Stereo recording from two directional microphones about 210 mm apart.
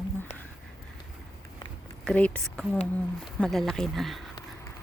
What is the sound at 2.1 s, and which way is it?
Speech, 5° left (ahead or behind).